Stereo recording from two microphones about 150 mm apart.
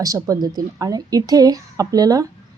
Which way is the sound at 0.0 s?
25° right (ahead or behind).